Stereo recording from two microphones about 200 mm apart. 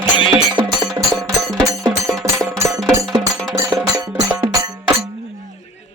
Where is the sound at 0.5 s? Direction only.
20° right (ahead or behind).